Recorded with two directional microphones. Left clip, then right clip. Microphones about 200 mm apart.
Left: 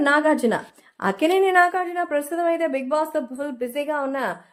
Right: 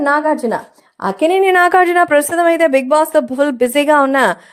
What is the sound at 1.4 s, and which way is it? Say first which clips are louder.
A woman's voice: right 10 dB; 50° right (ahead or behind).